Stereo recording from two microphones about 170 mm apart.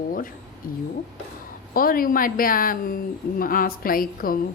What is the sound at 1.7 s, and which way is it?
A woman's voice, 55° left (ahead or behind).